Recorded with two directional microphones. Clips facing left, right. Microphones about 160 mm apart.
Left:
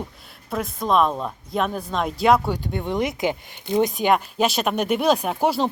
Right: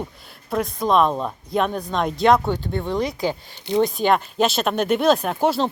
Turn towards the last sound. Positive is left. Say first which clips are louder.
# right 1 dB
turn(degrees=10)  # may be behind; listen again after turning